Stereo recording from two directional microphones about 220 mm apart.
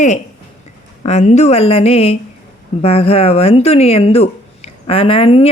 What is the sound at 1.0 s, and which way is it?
Speech, 30° left (ahead or behind).